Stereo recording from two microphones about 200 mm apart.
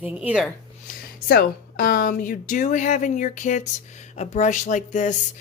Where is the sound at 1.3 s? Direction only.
45° left (ahead or behind).